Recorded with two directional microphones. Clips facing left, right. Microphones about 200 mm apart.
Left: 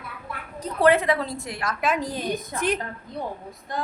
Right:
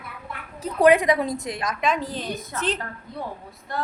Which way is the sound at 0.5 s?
10° right (ahead or behind).